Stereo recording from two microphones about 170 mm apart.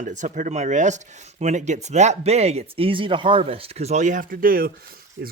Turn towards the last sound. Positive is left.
turn(degrees=-60)  # may be behind; listen again after turning